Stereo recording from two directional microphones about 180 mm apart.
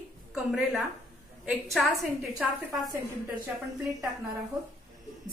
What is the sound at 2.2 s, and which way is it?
Speech, 15° right (ahead or behind).